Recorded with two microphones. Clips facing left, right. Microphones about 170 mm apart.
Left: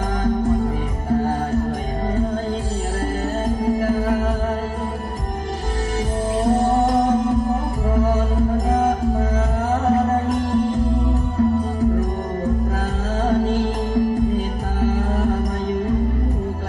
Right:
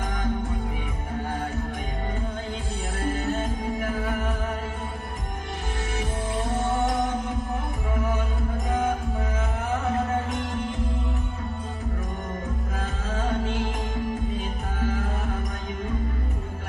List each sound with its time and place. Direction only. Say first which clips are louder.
3.6 s music: left 9 dB; 35° left (ahead or behind)
6.3 s music: left 9 dB; 40° left (ahead or behind)
13.2 s music: left 9 dB; 35° left (ahead or behind)